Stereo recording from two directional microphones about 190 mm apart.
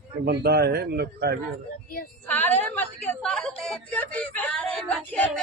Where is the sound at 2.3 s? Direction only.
10° left (ahead or behind).